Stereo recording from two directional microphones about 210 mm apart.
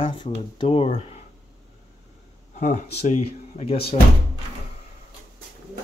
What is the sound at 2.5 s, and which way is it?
Speech, 35° left (ahead or behind).